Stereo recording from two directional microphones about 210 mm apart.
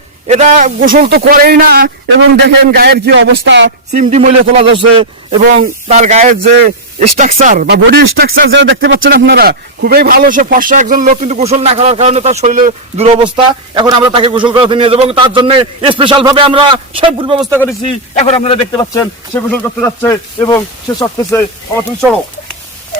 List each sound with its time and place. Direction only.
0.3 s a man's voice: 35° right (ahead or behind); by 3.7 s 55° right (ahead or behind)
3.9 s a man's voice: 40° right (ahead or behind)
13.2 s a man's voice: 20° right (ahead or behind)
18.1 s a man's voice: 30° left (ahead or behind)
18.8 s speech: 10° left (ahead or behind)